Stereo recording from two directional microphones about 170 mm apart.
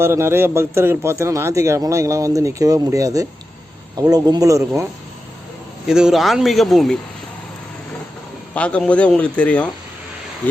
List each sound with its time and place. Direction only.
0.0 s a man's voice: 15° right (ahead or behind)
5.9 s speech: 5° right (ahead or behind)
8.5 s speech: 5° left (ahead or behind)